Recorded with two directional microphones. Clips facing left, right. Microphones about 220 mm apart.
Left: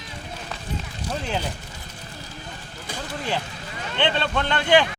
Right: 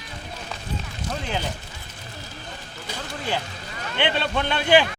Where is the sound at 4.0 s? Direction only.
10° right (ahead or behind).